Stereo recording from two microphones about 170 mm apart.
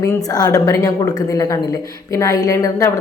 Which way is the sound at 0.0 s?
20° left (ahead or behind).